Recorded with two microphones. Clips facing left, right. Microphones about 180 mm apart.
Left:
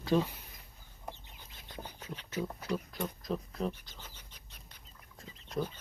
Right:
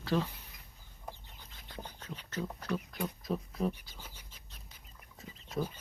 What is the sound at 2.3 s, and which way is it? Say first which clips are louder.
Speech: left 1 dB; 10° left (ahead or behind).